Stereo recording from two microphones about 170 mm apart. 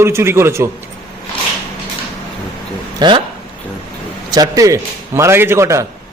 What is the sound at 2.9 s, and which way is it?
Speech, 25° right (ahead or behind).